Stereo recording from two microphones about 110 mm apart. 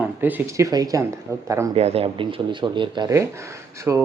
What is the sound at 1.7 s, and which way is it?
Speech, 65° right (ahead or behind).